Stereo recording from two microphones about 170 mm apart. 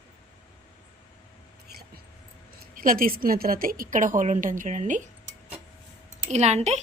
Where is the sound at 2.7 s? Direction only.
55° right (ahead or behind).